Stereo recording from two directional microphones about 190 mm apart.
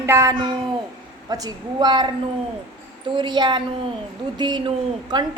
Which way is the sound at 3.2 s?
25° right (ahead or behind).